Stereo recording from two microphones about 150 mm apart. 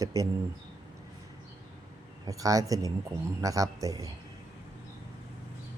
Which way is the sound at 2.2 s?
25° right (ahead or behind).